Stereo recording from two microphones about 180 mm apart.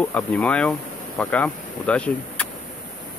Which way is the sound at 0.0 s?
5° left (ahead or behind).